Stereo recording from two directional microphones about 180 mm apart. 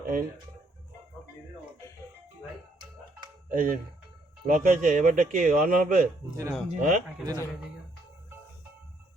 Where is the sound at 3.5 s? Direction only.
50° right (ahead or behind).